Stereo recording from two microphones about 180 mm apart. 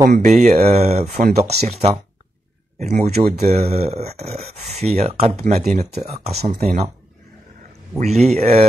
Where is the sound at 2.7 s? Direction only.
40° right (ahead or behind).